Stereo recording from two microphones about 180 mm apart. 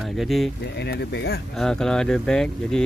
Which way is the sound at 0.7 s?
70° left (ahead or behind).